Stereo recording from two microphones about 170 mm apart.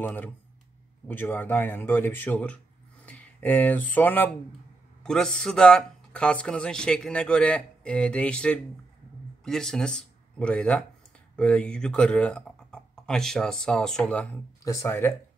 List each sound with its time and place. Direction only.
0.0 s speech: 10° left (ahead or behind)
14.6 s speech: 20° left (ahead or behind)